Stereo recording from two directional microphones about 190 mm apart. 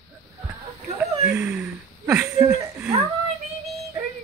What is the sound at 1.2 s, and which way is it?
Speech, 10° right (ahead or behind).